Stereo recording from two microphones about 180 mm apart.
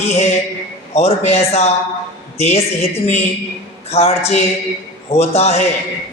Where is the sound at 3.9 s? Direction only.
35° left (ahead or behind).